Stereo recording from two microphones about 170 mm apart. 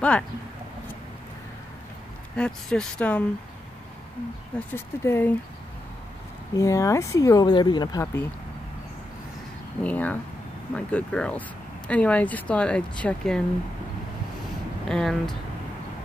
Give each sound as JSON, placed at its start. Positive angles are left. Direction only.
{"t": 2.3, "sound": "a woman's voice", "side_deg": 5}
{"t": 4.6, "sound": "a woman's voice", "side_deg": 15}
{"t": 6.5, "sound": "speech", "side_deg": 20}
{"t": 9.8, "sound": "a woman's voice", "side_deg": 10}
{"t": 14.9, "sound": "speech", "side_deg": 5}